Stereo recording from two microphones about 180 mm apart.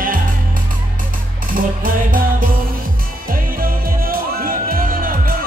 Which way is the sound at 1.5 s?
50° right (ahead or behind).